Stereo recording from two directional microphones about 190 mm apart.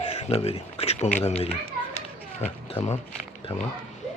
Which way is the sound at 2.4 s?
30° left (ahead or behind).